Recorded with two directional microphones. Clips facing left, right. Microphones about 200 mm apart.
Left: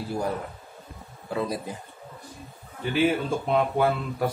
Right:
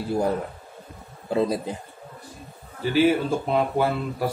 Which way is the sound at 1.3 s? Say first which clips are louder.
Right 6 dB; 25° right (ahead or behind).